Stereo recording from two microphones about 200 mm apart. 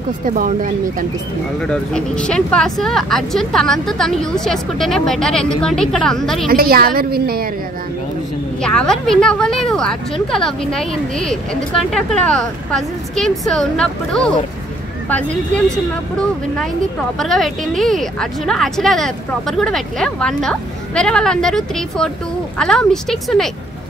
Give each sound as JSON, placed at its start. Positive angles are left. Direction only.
{"t": 0.3, "sound": "speech", "side_deg": -40}
{"t": 1.7, "sound": "a woman's voice", "side_deg": 5}
{"t": 6.5, "sound": "a woman's voice", "side_deg": -50}
{"t": 8.6, "sound": "a woman's voice", "side_deg": 5}